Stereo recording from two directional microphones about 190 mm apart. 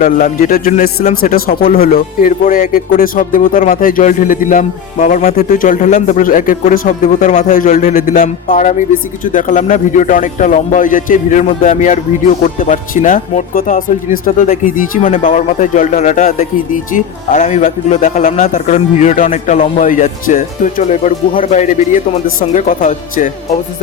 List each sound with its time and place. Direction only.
0.0 s a man's voice: 45° left (ahead or behind)